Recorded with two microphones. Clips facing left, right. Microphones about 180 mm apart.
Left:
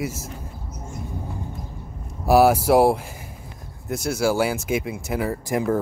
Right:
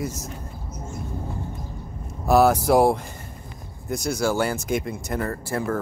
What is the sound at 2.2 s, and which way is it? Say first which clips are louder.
Speech: left 2 dB; 10° left (ahead or behind).